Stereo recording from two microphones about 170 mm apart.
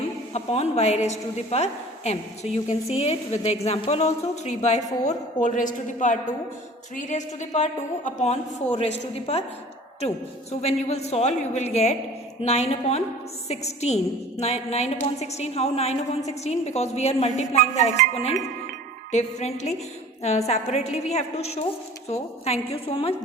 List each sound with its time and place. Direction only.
0.3 s a woman's voice: 40° left (ahead or behind)
10.6 s a woman's voice: 40° left (ahead or behind)